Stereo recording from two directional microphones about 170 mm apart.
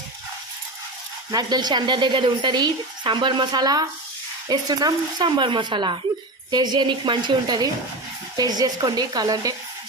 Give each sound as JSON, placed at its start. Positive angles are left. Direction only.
{"t": 1.3, "sound": "a woman's voice", "side_deg": -25}